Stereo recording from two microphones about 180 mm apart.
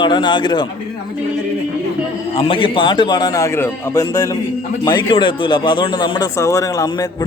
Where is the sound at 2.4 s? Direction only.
30° left (ahead or behind).